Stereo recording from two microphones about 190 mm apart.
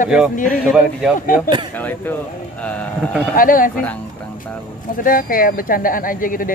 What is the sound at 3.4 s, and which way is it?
Speech, 45° left (ahead or behind).